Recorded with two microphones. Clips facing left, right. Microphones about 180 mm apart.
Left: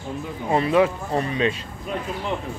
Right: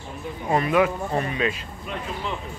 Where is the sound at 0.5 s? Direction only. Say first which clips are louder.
Left 2 dB; 30° left (ahead or behind).